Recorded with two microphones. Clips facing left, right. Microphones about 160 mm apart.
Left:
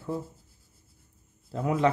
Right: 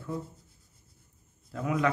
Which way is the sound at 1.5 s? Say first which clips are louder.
Left 3 dB; 30° left (ahead or behind).